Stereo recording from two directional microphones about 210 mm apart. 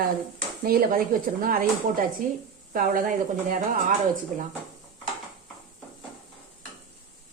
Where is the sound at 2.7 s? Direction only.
40° right (ahead or behind).